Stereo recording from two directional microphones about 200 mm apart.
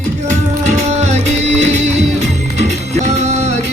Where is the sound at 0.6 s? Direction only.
35° right (ahead or behind).